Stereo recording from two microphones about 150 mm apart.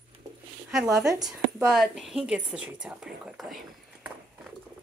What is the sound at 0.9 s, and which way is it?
Speech, 25° right (ahead or behind).